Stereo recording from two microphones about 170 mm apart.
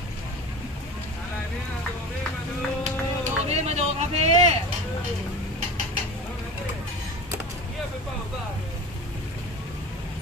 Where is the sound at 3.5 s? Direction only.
40° right (ahead or behind).